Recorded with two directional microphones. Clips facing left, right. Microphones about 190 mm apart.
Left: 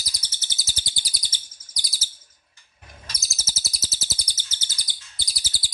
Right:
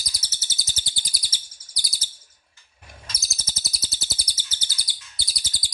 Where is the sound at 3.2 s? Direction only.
Centre (ahead or behind).